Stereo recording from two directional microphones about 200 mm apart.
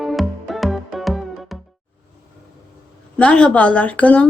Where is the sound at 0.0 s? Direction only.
Centre (ahead or behind).